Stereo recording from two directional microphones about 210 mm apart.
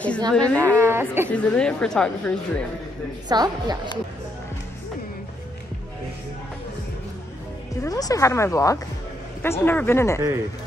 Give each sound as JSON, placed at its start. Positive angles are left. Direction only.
{"t": 0.3, "sound": "a woman's voice", "side_deg": 5}
{"t": 0.6, "sound": "a woman's voice", "side_deg": -10}
{"t": 1.3, "sound": "a woman's voice", "side_deg": 5}
{"t": 3.3, "sound": "a woman's voice", "side_deg": -20}
{"t": 7.8, "sound": "speech", "side_deg": 15}